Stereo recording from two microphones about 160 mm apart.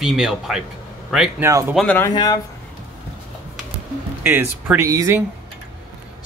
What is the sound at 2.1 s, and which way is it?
Speech, 25° left (ahead or behind).